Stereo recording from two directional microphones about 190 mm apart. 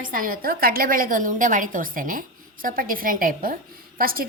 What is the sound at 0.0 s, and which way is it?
A woman's voice, 45° right (ahead or behind).